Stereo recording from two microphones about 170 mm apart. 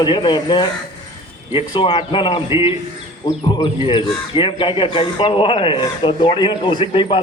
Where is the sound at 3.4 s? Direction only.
30° left (ahead or behind).